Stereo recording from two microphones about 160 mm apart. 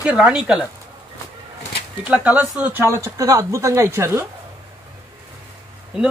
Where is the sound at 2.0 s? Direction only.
10° right (ahead or behind).